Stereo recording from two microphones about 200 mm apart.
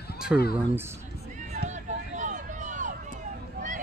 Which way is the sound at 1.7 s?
35° right (ahead or behind).